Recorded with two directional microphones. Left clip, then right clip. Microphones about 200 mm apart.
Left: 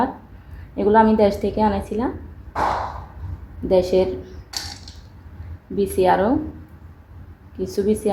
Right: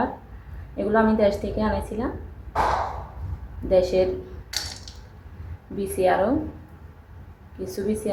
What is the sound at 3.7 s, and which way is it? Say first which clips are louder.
Speech: left 2 dB; 35° left (ahead or behind).